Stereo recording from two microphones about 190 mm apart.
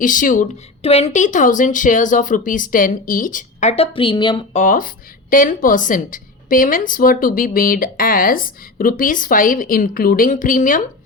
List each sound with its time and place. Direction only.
0.0 s a woman's voice: 45° left (ahead or behind)
0.8 s a woman's voice: 35° left (ahead or behind)
4.5 s a woman's voice: 45° left (ahead or behind)